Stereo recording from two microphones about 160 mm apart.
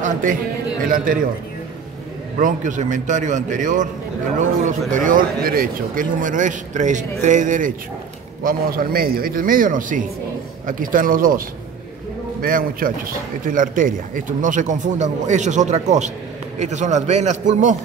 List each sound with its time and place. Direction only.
0.0 s a man's voice: 55° right (ahead or behind)
2.3 s a man's voice: 55° right (ahead or behind)
8.5 s a man's voice: 65° right (ahead or behind); by 17.7 s 50° right (ahead or behind)